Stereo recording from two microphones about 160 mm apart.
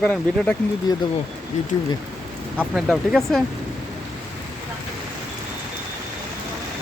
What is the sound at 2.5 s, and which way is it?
Speech, 5° right (ahead or behind).